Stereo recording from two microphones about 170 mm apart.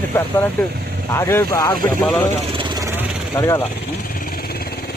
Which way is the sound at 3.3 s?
20° left (ahead or behind).